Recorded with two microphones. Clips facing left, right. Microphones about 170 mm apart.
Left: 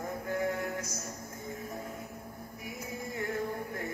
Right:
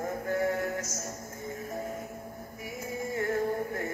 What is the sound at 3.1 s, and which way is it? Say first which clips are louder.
Male singing: right 6 dB; 45° right (ahead or behind).